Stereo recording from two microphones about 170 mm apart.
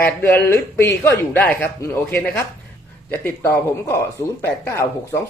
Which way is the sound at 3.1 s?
10° left (ahead or behind).